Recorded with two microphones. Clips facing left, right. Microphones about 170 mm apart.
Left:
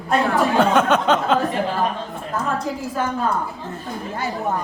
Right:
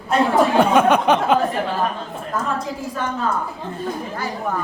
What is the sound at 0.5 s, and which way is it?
Speech, 10° right (ahead or behind).